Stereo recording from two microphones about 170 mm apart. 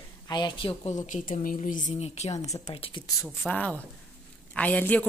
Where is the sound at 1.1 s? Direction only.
50° left (ahead or behind).